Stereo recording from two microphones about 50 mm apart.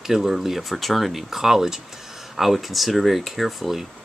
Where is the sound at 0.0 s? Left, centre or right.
Centre.